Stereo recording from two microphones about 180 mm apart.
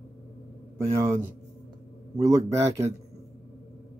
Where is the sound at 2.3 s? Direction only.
15° right (ahead or behind).